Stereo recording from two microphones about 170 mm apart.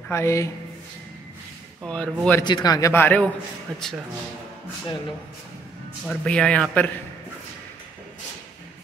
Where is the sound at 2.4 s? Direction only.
25° left (ahead or behind).